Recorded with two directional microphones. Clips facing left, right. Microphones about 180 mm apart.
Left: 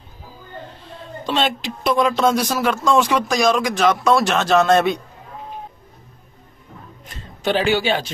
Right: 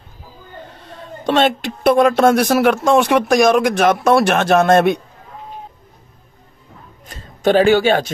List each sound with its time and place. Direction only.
0.7 s speech: 65° right (ahead or behind)
7.1 s speech: 45° right (ahead or behind)